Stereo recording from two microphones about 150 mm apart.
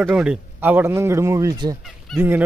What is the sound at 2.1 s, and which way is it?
Fowl, centre (ahead or behind).